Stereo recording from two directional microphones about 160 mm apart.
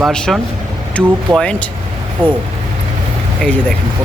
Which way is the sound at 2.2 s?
30° right (ahead or behind).